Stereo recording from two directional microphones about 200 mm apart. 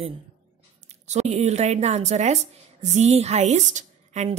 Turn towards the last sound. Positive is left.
turn(degrees=-35)  # may be behind; listen again after turning